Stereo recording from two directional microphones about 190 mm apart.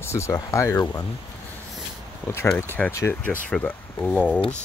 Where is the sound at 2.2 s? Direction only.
15° left (ahead or behind).